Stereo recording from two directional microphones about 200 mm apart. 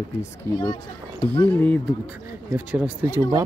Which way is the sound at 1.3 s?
10° left (ahead or behind).